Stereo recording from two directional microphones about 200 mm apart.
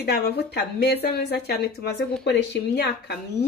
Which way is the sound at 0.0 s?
55° left (ahead or behind).